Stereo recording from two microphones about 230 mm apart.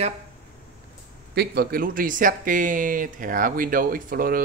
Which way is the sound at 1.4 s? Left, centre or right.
Right.